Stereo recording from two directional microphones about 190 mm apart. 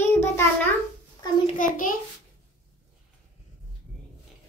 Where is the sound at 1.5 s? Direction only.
45° left (ahead or behind).